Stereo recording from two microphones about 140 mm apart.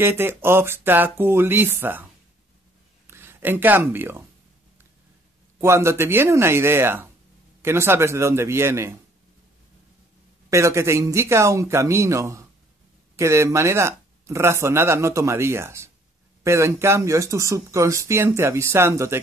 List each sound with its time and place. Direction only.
0.0 s speech: 15° right (ahead or behind)
3.1 s speech: 15° right (ahead or behind)
5.6 s speech: 20° right (ahead or behind)
10.5 s speech: 20° right (ahead or behind)